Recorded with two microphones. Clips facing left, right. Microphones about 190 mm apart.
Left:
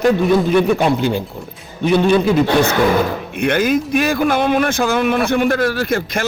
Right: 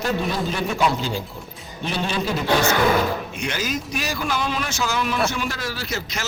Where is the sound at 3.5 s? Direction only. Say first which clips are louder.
Left 13 dB; 55° left (ahead or behind).